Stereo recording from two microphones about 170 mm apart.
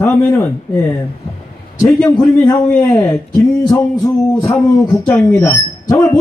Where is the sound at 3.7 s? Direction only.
20° left (ahead or behind).